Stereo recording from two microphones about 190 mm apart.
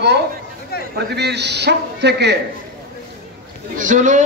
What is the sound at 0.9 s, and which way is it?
A man's voice, 60° right (ahead or behind).